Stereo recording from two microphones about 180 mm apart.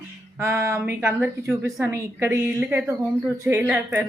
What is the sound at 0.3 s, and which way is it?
A woman's voice, 15° right (ahead or behind).